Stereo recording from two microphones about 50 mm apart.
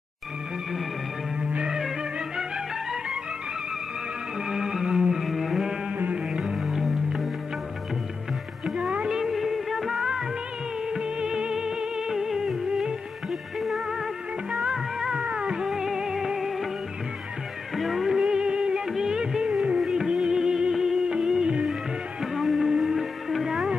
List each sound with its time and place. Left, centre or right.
1.4 s music: centre
4.5 s music: centre
8.6 s music: centre
9.2 s music of bollywood: centre
10.9 s music: centre
17.7 s music: centre
22.2 s music: centre